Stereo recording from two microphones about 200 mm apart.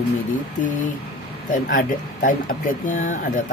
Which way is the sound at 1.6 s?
40° left (ahead or behind).